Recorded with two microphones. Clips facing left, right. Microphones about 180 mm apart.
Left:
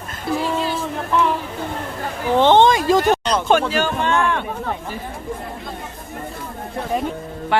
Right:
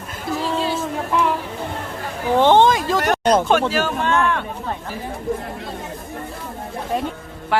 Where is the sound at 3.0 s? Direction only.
55° right (ahead or behind).